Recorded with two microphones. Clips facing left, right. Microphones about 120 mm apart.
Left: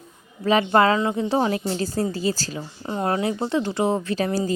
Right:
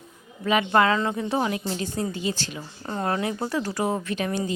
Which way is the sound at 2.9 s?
20° left (ahead or behind).